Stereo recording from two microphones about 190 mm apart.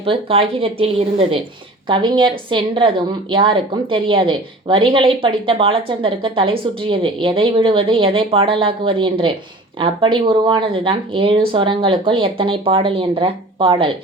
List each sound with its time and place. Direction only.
0.0 s a woman's voice: 30° right (ahead or behind)